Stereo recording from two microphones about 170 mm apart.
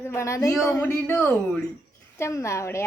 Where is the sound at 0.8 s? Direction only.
10° left (ahead or behind).